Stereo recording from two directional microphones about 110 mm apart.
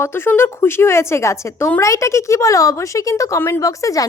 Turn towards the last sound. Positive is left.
turn(degrees=30)  # may be behind; listen again after turning